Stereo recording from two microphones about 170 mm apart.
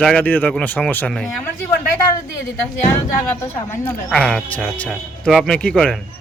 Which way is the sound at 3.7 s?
10° left (ahead or behind).